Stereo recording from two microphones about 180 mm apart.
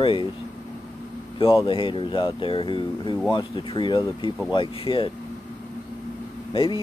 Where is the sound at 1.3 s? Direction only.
30° left (ahead or behind).